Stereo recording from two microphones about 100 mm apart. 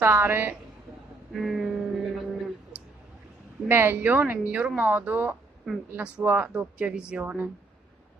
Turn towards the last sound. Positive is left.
turn(degrees=-15)  # may be behind; listen again after turning